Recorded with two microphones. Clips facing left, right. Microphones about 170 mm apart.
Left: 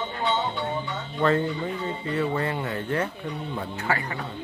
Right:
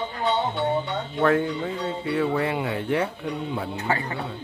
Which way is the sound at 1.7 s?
90° right.